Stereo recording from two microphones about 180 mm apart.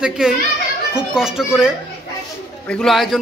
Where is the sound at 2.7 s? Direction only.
Centre (ahead or behind).